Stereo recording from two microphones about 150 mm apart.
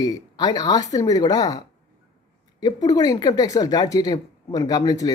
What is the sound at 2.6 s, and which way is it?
Speech, 25° left (ahead or behind).